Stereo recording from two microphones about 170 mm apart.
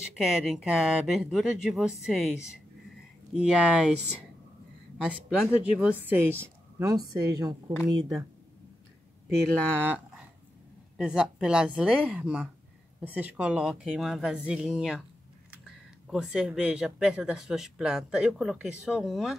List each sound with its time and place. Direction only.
0.2 s speech: 5° right (ahead or behind)
5.0 s speech: 5° right (ahead or behind)
7.2 s a woman's voice: 20° right (ahead or behind)
9.8 s speech: 10° right (ahead or behind)
16.1 s speech: 5° right (ahead or behind)